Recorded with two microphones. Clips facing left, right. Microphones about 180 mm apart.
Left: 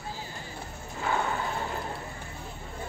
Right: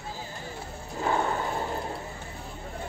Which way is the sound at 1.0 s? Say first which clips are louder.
Right 2 dB; 40° right (ahead or behind).